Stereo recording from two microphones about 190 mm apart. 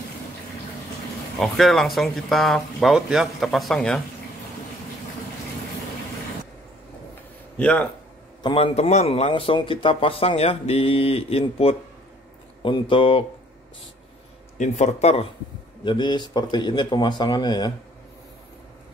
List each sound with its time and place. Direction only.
1.4 s speech: centre (ahead or behind)
7.5 s speech: 5° left (ahead or behind)
8.4 s a man's voice: 25° left (ahead or behind)
14.6 s a man's voice: 35° left (ahead or behind); by 17.7 s 20° left (ahead or behind)